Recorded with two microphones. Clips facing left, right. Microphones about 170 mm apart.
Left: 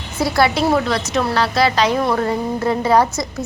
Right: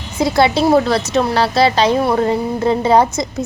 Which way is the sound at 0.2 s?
20° right (ahead or behind).